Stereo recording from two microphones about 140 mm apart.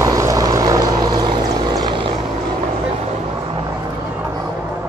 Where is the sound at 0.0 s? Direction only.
25° right (ahead or behind).